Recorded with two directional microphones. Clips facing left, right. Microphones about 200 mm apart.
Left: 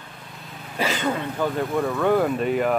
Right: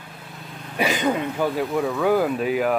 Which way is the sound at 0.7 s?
15° right (ahead or behind).